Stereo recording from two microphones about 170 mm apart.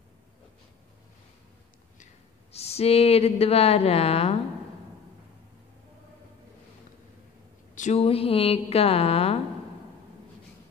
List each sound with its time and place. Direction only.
2.5 s speech: 35° left (ahead or behind)
7.7 s a sound: 45° left (ahead or behind)
8.0 s speech: 35° left (ahead or behind)